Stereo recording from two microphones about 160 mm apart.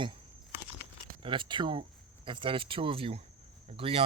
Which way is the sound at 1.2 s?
30° right (ahead or behind).